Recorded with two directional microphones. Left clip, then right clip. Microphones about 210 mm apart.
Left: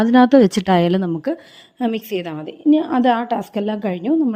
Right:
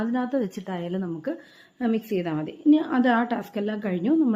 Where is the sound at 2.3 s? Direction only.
25° left (ahead or behind).